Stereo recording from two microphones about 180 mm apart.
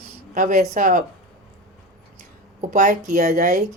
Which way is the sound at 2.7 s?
45° right (ahead or behind).